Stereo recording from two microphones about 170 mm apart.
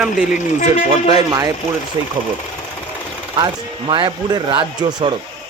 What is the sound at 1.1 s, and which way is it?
Speech, 20° right (ahead or behind).